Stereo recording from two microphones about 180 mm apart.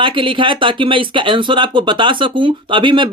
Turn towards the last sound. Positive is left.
turn(degrees=-25)  # may be behind; listen again after turning